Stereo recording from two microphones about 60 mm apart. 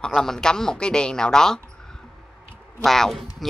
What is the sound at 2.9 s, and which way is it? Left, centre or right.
Speech, centre.